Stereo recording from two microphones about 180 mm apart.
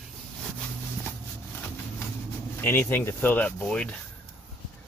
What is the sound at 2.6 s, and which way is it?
Speech, 10° left (ahead or behind).